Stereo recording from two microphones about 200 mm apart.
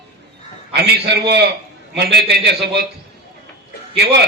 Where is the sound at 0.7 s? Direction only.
55° right (ahead or behind).